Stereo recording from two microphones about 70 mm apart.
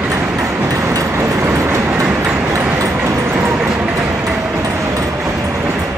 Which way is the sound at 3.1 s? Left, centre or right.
Right.